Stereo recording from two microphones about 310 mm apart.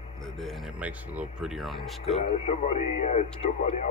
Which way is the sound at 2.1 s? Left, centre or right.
Centre.